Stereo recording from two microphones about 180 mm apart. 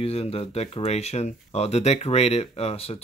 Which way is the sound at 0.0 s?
35° left (ahead or behind).